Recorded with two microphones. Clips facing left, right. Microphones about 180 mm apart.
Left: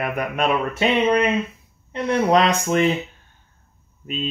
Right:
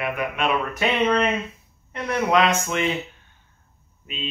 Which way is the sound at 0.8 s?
25° left (ahead or behind).